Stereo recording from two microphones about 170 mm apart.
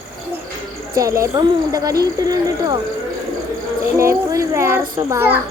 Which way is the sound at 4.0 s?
15° right (ahead or behind).